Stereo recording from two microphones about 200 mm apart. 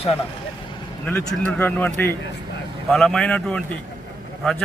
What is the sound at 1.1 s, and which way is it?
A man's voice, 10° left (ahead or behind).